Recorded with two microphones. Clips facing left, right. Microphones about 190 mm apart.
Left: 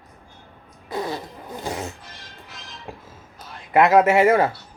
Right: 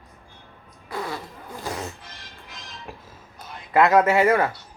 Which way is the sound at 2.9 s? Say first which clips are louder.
Left 3 dB; 25° left (ahead or behind).